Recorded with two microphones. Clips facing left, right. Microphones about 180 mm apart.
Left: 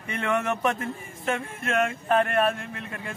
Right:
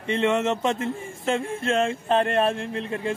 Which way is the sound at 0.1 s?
25° right (ahead or behind).